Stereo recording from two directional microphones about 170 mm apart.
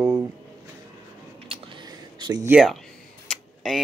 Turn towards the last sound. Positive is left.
turn(degrees=0)  # may be behind; listen again after turning